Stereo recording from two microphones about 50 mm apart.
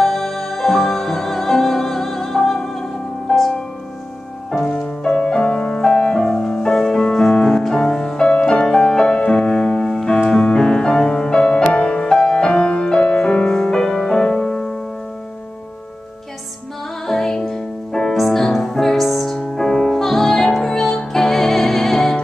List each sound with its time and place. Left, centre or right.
0.0 s music: centre
3.3 s music: centre
4.5 s music: centre
17.0 s music: centre